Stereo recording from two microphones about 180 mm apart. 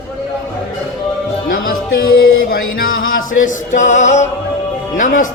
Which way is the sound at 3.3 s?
45° left (ahead or behind).